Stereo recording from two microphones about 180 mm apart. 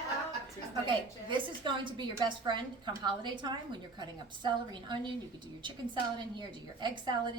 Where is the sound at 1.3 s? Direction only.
25° right (ahead or behind).